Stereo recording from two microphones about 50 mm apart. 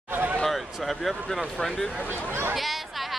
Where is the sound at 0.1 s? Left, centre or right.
Right.